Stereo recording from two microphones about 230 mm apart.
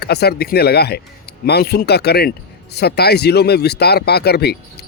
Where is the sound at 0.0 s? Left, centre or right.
Left.